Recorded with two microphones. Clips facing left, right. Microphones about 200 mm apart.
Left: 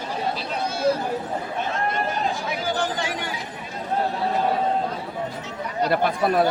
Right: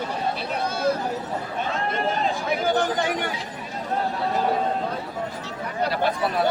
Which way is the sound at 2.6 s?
60° right (ahead or behind).